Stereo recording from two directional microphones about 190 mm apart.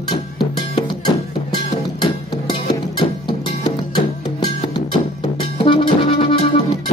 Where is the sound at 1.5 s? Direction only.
25° left (ahead or behind).